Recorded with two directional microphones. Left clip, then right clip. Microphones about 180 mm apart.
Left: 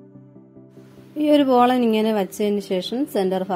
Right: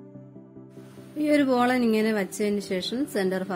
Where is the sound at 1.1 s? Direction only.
15° left (ahead or behind).